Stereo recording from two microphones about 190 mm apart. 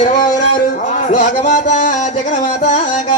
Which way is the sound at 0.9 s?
40° left (ahead or behind).